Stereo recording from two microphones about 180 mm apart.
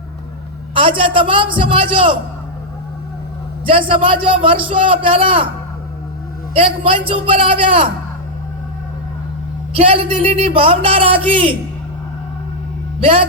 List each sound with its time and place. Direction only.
0.7 s a woman's voice: 30° right (ahead or behind)
3.7 s a man's voice: 30° right (ahead or behind)
6.6 s a man's voice: 30° right (ahead or behind)
9.7 s a man's voice: 30° right (ahead or behind)